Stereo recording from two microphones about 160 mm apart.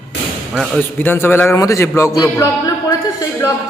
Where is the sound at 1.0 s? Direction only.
15° left (ahead or behind).